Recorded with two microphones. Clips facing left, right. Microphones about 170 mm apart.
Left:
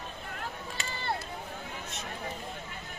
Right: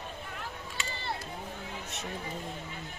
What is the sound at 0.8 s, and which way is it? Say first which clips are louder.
Run: left 2 dB; 55° left (ahead or behind).